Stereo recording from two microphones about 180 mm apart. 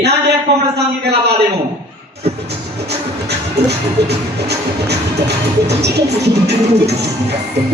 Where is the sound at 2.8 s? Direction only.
65° right (ahead or behind).